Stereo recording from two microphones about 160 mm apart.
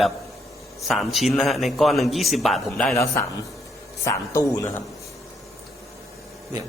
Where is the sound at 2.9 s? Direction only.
20° left (ahead or behind).